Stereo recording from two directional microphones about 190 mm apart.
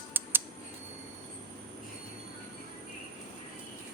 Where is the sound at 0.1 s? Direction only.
10° right (ahead or behind).